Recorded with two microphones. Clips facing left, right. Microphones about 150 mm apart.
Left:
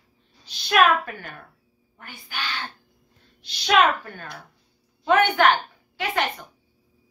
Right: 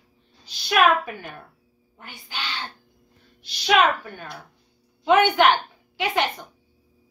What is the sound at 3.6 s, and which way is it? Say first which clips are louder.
A woman's voice: even; 5° right (ahead or behind).